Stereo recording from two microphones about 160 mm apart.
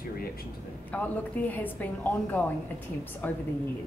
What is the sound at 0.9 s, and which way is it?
A woman's voice, 10° left (ahead or behind).